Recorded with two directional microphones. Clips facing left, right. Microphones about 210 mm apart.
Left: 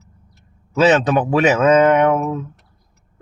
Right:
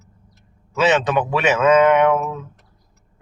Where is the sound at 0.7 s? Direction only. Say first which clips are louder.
Left 3 dB; 35° left (ahead or behind).